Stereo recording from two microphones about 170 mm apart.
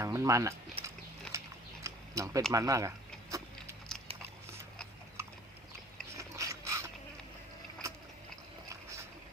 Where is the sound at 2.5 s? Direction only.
20° right (ahead or behind).